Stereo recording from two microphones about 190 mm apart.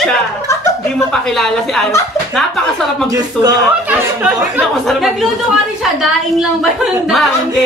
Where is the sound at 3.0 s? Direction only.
20° right (ahead or behind).